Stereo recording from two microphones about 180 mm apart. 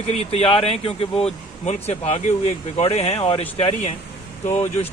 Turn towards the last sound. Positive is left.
turn(degrees=40)  # may be behind; listen again after turning